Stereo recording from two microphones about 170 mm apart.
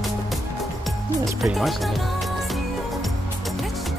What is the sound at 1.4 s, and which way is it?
Speech, centre (ahead or behind).